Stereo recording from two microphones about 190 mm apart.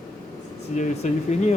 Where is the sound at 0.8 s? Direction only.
40° left (ahead or behind).